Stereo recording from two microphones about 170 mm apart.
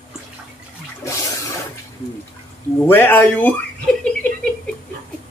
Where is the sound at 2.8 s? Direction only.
15° left (ahead or behind).